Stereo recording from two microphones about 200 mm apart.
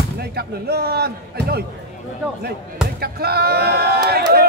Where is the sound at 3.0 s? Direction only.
50° right (ahead or behind).